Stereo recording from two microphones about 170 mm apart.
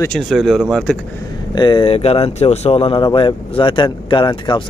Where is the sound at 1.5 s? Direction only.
25° left (ahead or behind).